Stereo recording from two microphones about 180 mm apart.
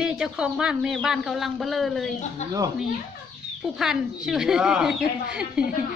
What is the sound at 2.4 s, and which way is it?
Speech, 40° left (ahead or behind).